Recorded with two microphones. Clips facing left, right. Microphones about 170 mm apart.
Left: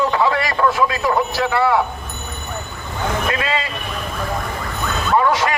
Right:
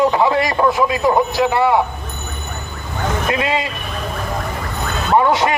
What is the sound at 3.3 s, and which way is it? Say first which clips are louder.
Speech: right 3 dB; 20° right (ahead or behind).